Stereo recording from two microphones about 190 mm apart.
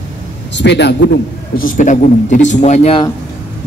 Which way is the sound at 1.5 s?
45° left (ahead or behind).